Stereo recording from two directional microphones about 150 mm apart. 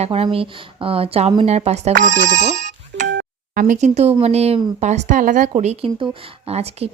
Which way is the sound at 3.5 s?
60° right (ahead or behind).